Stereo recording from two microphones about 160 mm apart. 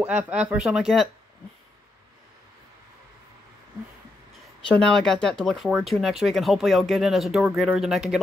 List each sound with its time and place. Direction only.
0.0 s speech: 10° right (ahead or behind)
4.6 s speech: 5° left (ahead or behind)